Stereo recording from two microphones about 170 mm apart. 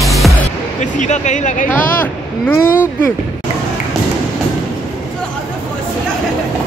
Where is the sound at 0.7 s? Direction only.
45° left (ahead or behind).